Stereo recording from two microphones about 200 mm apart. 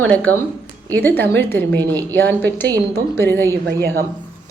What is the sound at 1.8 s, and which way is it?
Speech, 20° right (ahead or behind).